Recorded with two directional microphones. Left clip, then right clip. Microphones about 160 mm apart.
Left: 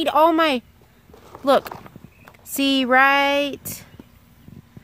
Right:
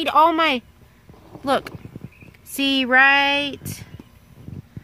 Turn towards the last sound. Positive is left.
turn(degrees=70)  # may be behind; listen again after turning